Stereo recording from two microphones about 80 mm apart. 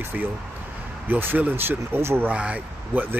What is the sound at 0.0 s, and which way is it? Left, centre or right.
Speech, right.